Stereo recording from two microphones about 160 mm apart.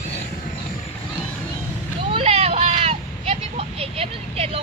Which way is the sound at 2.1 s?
40° right (ahead or behind).